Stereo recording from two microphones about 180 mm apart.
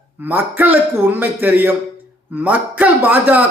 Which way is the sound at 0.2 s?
10° right (ahead or behind).